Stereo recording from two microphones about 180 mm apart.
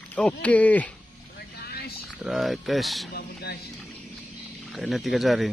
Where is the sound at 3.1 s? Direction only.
60° left (ahead or behind).